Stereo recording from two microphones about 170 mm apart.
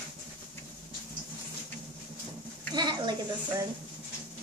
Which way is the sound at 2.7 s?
25° right (ahead or behind).